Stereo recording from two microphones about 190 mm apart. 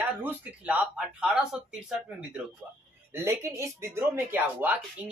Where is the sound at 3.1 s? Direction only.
15° right (ahead or behind).